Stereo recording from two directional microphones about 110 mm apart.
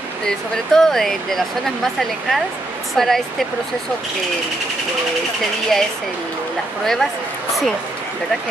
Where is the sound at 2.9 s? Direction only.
Centre (ahead or behind).